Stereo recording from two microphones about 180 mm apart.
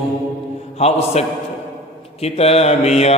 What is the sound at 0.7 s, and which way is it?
Music, 35° left (ahead or behind).